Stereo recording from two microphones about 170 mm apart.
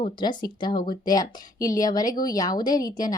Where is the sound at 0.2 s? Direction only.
25° left (ahead or behind).